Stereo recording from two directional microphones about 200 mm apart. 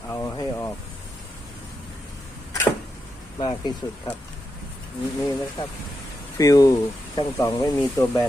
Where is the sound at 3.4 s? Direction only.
20° left (ahead or behind).